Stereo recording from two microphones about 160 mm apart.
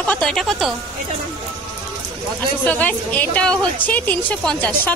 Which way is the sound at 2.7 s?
10° left (ahead or behind).